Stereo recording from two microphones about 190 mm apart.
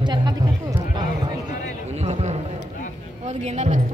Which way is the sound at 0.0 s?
20° right (ahead or behind).